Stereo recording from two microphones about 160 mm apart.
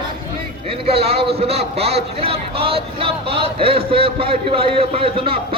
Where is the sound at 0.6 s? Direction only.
35° right (ahead or behind).